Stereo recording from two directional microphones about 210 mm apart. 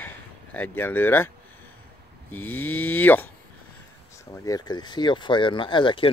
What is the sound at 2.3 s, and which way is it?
Cattle, 10° left (ahead or behind).